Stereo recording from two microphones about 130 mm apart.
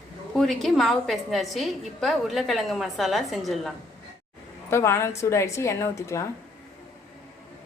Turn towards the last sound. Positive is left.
turn(degrees=20)  # may be behind; listen again after turning